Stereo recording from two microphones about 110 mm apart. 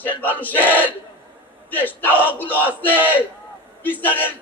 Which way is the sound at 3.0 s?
15° right (ahead or behind).